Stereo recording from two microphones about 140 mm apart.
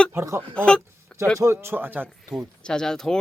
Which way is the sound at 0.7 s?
5° left (ahead or behind).